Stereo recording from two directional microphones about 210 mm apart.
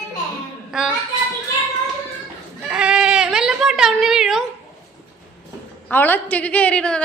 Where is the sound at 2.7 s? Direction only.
5° right (ahead or behind).